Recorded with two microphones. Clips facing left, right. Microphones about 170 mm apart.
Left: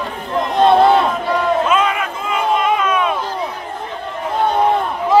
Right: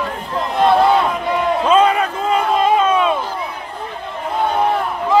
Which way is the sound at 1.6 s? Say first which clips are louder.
Right 4 dB; 35° right (ahead or behind).